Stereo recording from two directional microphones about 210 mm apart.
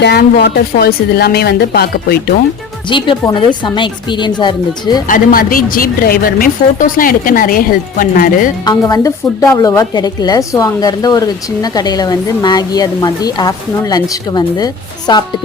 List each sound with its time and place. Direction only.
0.0 s a woman's voice: 50° left (ahead or behind)
2.9 s speech: 25° left (ahead or behind)
5.0 s a woman's voice: 40° left (ahead or behind)
8.6 s a woman's voice: 20° left (ahead or behind)